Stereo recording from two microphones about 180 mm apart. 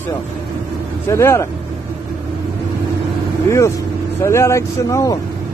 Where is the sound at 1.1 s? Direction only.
15° left (ahead or behind).